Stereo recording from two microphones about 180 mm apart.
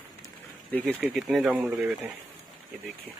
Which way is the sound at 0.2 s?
5° left (ahead or behind).